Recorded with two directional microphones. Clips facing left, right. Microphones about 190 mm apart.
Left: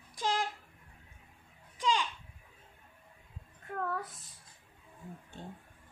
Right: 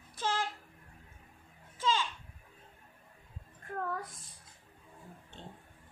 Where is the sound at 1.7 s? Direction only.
15° left (ahead or behind).